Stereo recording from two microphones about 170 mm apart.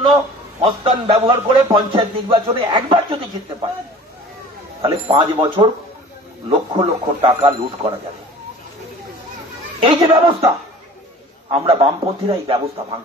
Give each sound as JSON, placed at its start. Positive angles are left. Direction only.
{"t": 0.6, "sound": "speech", "side_deg": -35}
{"t": 4.8, "sound": "speech", "side_deg": -35}
{"t": 9.8, "sound": "speech", "side_deg": -35}
{"t": 11.5, "sound": "speech", "side_deg": -35}